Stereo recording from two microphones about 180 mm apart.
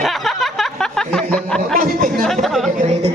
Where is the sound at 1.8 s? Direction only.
50° right (ahead or behind).